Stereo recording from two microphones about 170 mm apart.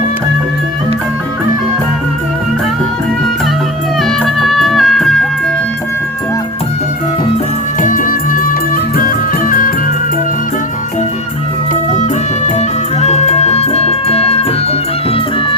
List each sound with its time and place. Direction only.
4.0 s music: centre (ahead or behind)
7.8 s music: 50° left (ahead or behind)
12.5 s music: 40° left (ahead or behind)